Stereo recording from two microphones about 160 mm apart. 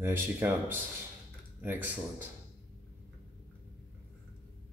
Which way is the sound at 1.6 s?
10° right (ahead or behind).